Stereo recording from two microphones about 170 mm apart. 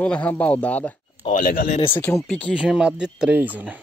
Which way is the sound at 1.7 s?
30° left (ahead or behind).